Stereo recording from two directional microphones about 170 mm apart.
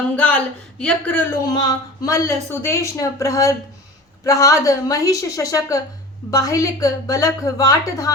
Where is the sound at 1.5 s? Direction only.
25° left (ahead or behind).